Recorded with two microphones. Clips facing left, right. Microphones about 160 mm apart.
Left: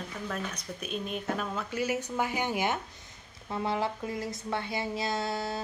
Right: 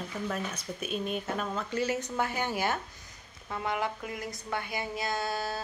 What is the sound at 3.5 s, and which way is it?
Speech, 25° left (ahead or behind).